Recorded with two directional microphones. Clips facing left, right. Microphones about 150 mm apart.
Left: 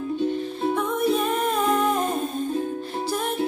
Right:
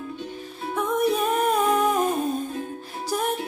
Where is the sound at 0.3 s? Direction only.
10° right (ahead or behind).